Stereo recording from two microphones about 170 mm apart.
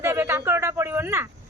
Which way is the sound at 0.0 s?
15° right (ahead or behind).